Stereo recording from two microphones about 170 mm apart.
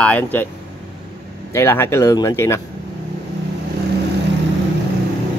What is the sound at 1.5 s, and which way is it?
Speech, 15° left (ahead or behind).